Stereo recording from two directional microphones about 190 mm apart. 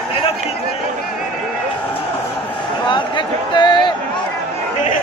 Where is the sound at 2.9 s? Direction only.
25° left (ahead or behind).